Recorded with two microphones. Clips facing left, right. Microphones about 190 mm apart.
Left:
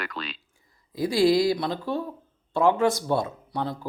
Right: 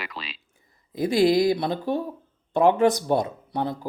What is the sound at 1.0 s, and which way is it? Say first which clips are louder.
Speech: right 1 dB; 20° right (ahead or behind).